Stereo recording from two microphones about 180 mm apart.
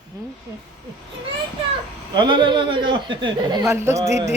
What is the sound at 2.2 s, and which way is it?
A man's voice, 25° right (ahead or behind).